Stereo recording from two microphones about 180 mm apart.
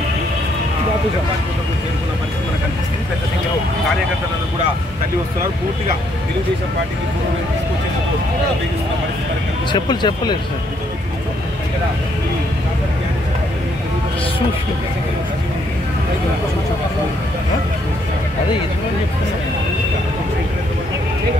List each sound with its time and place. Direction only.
9.7 s speech: 25° left (ahead or behind)